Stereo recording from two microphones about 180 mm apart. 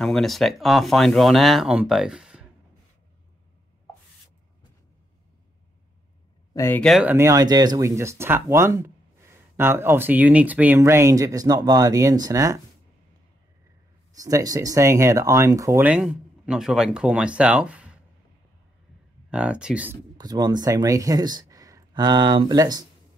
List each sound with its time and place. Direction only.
0.0 s speech: centre (ahead or behind)
6.5 s speech: 15° left (ahead or behind)
6.8 s speech: centre (ahead or behind)
7.1 s speech: 15° right (ahead or behind)
14.1 s speech: 20° right (ahead or behind)
19.3 s speech: 5° right (ahead or behind)
20.2 s speech: 20° right (ahead or behind)